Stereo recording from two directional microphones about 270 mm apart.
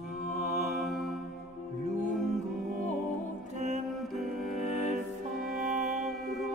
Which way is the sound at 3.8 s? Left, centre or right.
Centre.